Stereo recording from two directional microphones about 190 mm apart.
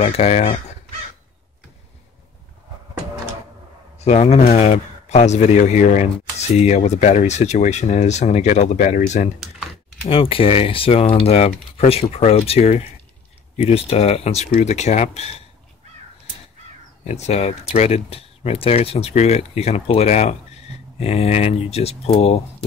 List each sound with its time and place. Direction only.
0.0 s speech: 35° left (ahead or behind)
4.0 s speech: 35° left (ahead or behind)
10.0 s speech: 30° left (ahead or behind)
17.0 s speech: 35° left (ahead or behind)